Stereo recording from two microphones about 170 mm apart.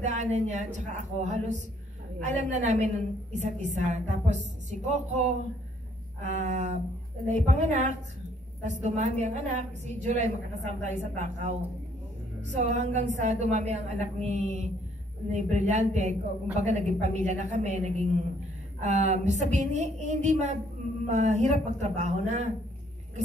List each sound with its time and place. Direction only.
0.0 s a woman's voice: 45° right (ahead or behind)
6.2 s a woman's voice: 45° right (ahead or behind)